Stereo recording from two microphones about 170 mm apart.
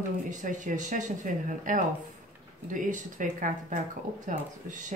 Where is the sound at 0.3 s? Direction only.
50° right (ahead or behind).